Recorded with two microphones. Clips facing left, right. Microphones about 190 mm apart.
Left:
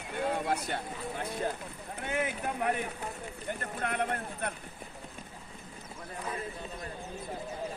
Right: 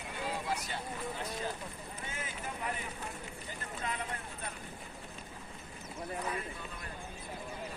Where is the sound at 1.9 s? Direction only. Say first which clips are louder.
Left 13 dB; 65° left (ahead or behind).